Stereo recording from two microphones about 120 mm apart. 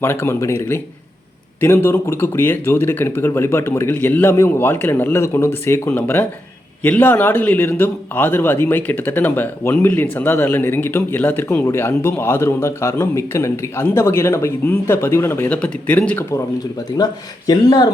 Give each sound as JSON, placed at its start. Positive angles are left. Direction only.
{"t": 0.0, "sound": "a man's voice", "side_deg": 20}
{"t": 17.0, "sound": "speech", "side_deg": 30}